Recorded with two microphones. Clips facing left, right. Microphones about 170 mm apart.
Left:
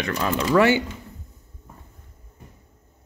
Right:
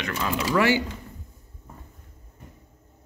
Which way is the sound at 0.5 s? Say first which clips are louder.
Left 4 dB; 25° left (ahead or behind).